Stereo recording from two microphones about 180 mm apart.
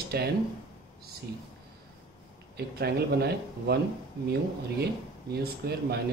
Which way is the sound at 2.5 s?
65° right (ahead or behind).